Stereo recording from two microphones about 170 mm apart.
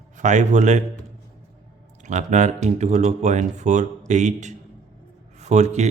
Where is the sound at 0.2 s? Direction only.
45° right (ahead or behind).